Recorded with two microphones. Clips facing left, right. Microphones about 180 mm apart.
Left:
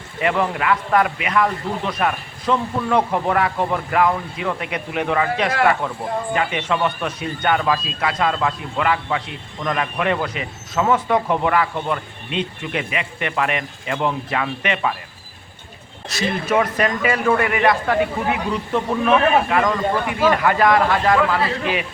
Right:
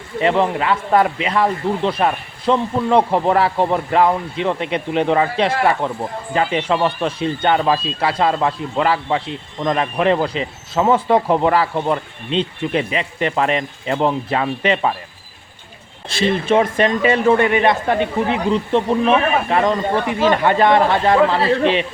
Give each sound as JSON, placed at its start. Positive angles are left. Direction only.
{"t": 0.2, "sound": "speech", "side_deg": -30}
{"t": 16.0, "sound": "speech", "side_deg": -30}